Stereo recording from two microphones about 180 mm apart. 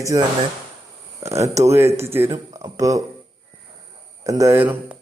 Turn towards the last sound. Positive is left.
turn(degrees=-10)  # may be behind; listen again after turning